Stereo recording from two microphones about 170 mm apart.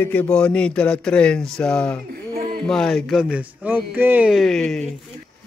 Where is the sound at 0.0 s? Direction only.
10° left (ahead or behind).